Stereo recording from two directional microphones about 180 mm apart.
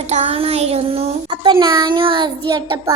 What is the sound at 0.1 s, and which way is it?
Child singing, 35° right (ahead or behind).